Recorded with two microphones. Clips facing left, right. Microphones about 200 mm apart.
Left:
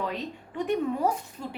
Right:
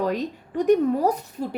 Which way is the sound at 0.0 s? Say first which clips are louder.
Right 7 dB; 40° right (ahead or behind).